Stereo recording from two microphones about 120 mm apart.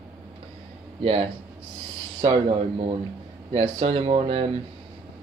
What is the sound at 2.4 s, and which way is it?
Speech, 50° right (ahead or behind).